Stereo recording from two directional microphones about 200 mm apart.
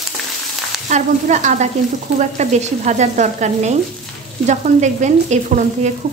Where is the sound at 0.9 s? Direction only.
35° right (ahead or behind).